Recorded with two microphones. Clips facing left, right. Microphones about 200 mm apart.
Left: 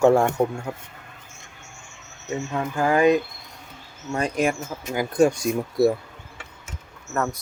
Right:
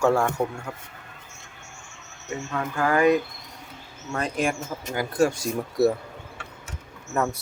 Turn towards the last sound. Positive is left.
turn(degrees=-10)  # may be behind; listen again after turning